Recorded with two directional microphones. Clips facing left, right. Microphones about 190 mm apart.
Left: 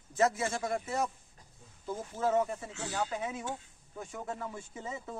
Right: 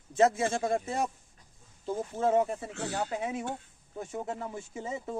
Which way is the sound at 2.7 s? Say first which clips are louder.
Right 2 dB; 60° right (ahead or behind).